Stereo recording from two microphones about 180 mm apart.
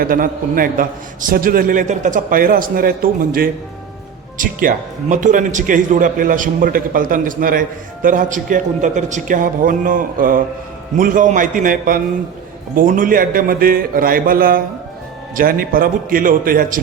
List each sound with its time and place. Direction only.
0.0 s speech: 50° right (ahead or behind)